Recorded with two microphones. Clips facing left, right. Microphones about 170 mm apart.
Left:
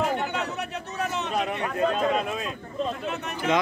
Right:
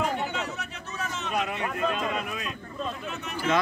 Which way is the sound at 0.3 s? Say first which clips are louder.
Left 4 dB; 60° left (ahead or behind).